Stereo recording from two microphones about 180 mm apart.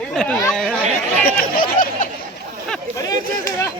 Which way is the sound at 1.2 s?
55° left (ahead or behind).